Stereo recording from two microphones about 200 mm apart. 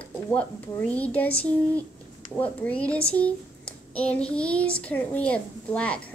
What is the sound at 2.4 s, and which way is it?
Speech, 5° left (ahead or behind).